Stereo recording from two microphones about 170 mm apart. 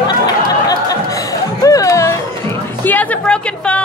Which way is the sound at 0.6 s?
20° left (ahead or behind).